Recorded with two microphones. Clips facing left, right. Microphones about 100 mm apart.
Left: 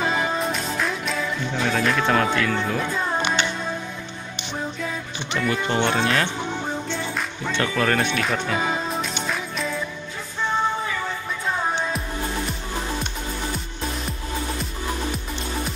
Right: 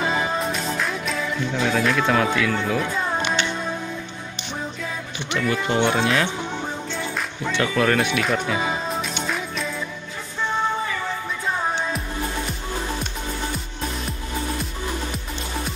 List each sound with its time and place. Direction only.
0.4 s music: centre (ahead or behind)
1.6 s speech: centre (ahead or behind)
5.3 s speech: centre (ahead or behind)
7.2 s music: centre (ahead or behind)